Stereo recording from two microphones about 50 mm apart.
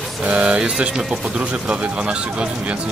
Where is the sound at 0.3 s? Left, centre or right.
Centre.